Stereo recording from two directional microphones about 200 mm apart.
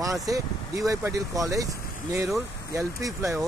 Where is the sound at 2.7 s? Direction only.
15° right (ahead or behind).